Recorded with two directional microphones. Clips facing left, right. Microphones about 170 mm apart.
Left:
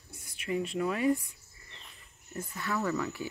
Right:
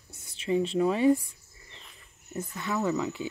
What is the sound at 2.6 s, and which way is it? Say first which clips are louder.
Speech: right 3 dB; 20° right (ahead or behind).